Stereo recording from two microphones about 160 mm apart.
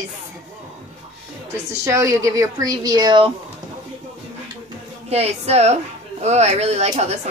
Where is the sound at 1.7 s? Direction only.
20° right (ahead or behind).